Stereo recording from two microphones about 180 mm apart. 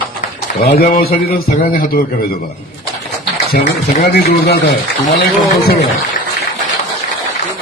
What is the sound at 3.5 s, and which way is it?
A man's voice, 60° left (ahead or behind).